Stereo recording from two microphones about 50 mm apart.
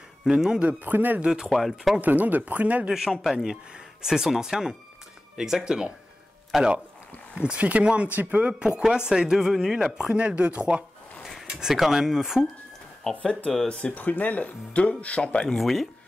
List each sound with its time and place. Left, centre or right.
0.2 s speech: centre
0.9 s speech: right
1.4 s speech: centre
2.0 s speech: right
3.1 s speech: centre
6.5 s speech: centre
7.3 s speech: right
8.8 s speech: centre
11.4 s speech: centre
13.1 s speech: left
15.4 s speech: centre